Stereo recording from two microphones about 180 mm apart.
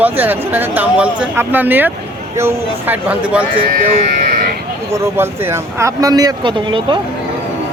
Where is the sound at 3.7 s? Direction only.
50° right (ahead or behind).